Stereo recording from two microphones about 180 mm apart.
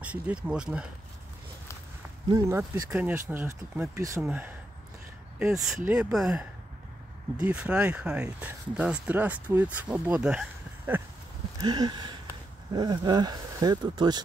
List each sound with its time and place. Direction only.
0.0 s speech: 5° right (ahead or behind)
2.3 s speech: 15° right (ahead or behind)
11.6 s a sound: 25° right (ahead or behind)
12.7 s speech: 25° right (ahead or behind)